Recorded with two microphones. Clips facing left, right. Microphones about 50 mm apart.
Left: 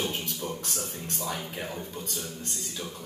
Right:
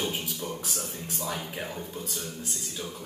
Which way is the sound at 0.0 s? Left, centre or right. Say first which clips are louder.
Even; centre.